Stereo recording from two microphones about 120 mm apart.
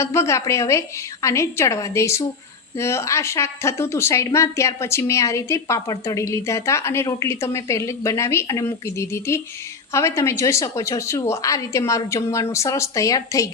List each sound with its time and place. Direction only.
0.0 s a woman's voice: 25° left (ahead or behind)